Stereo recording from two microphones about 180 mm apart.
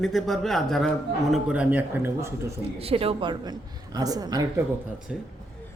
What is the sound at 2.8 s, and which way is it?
A woman's voice, 30° right (ahead or behind).